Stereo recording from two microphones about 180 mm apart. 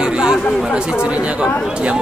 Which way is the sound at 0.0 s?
5° right (ahead or behind).